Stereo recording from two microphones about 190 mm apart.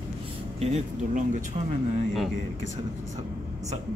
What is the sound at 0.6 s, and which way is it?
Speech, 35° right (ahead or behind).